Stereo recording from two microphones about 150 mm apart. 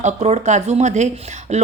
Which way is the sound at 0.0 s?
50° right (ahead or behind).